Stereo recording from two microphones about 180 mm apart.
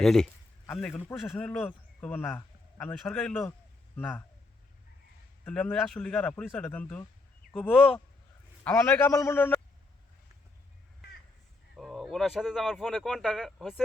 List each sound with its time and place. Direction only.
0.0 s a man's voice: centre (ahead or behind)
5.5 s speech: 5° left (ahead or behind)
11.8 s speech: centre (ahead or behind)